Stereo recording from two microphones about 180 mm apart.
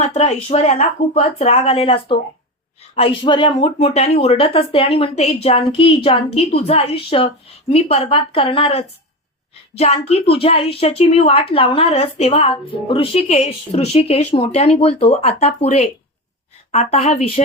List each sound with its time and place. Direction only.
0.0 s speech: 35° left (ahead or behind)